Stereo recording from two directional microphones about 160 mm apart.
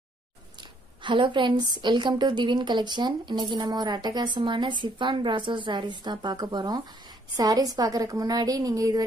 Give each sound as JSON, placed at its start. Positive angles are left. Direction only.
{"t": 0.6, "sound": "a woman's voice", "side_deg": -30}